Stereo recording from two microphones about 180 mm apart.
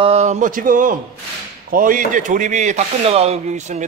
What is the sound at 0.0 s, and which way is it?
A man's voice, 35° right (ahead or behind).